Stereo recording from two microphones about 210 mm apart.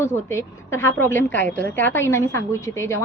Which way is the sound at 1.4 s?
40° right (ahead or behind).